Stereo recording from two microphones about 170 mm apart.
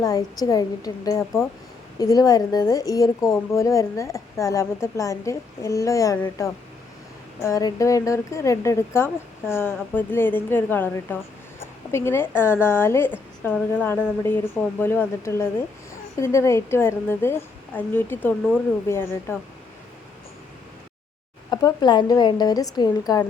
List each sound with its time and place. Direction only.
0.0 s a woman's voice: 20° left (ahead or behind)
21.5 s a woman's voice: 25° left (ahead or behind)